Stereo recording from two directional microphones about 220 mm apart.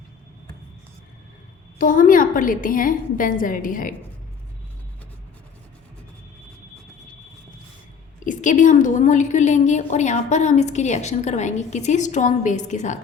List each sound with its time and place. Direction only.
1.8 s a woman's voice: 40° left (ahead or behind)
8.2 s a woman's voice: 35° left (ahead or behind)